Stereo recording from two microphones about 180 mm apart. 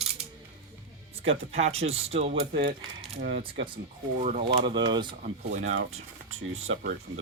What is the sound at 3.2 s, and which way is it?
Coin, 55° right (ahead or behind).